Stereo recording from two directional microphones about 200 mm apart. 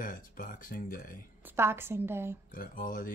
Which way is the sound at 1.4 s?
10° right (ahead or behind).